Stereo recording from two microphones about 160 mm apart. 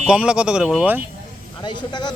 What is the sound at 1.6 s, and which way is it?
Speech, 25° left (ahead or behind).